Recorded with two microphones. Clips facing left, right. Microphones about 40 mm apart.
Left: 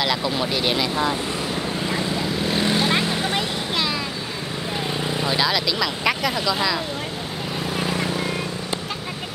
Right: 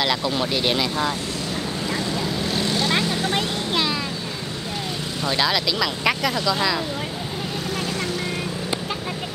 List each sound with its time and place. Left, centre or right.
0.0 s vehicle: centre
3.3 s a sound: centre
5.3 s speech: centre
7.7 s vehicle: centre